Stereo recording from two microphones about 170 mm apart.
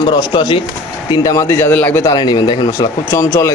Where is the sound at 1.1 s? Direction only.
20° left (ahead or behind).